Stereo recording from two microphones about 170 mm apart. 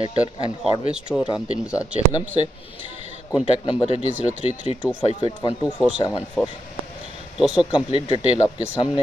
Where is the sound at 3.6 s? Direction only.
35° left (ahead or behind).